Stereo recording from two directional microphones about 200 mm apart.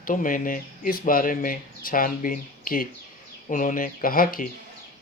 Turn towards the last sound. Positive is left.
turn(degrees=45)  # may be behind; listen again after turning